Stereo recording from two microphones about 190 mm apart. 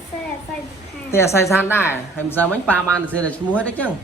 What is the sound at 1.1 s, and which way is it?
Speech, 15° left (ahead or behind).